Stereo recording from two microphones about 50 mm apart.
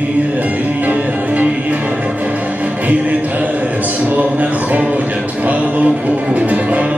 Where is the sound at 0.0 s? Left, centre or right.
Right.